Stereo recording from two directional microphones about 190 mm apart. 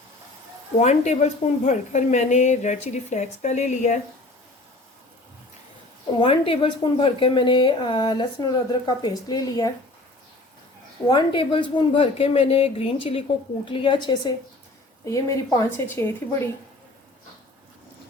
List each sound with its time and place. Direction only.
0.8 s a woman's voice: 35° left (ahead or behind)
6.1 s a woman's voice: 25° left (ahead or behind)
11.1 s a woman's voice: 25° left (ahead or behind)